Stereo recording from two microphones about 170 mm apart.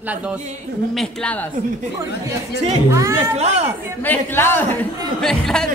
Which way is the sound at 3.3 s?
40° right (ahead or behind).